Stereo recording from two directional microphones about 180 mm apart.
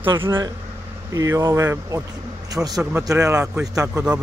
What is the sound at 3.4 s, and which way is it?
Speech, 5° right (ahead or behind).